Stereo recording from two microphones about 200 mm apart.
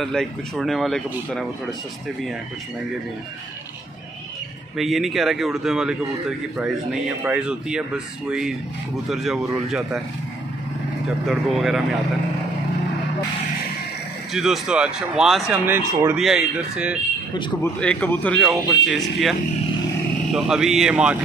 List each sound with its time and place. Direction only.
0.0 s speech: centre (ahead or behind)
4.7 s speech: centre (ahead or behind)
11.2 s speech: centre (ahead or behind)
14.3 s speech: centre (ahead or behind)
17.3 s speech: 25° left (ahead or behind)
17.7 s speech: 5° left (ahead or behind)
20.3 s speech: centre (ahead or behind)